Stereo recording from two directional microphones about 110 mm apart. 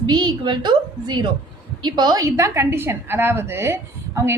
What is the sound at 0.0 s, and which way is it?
A woman's voice, 40° right (ahead or behind).